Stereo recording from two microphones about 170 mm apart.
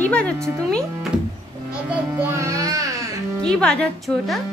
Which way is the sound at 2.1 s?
15° right (ahead or behind).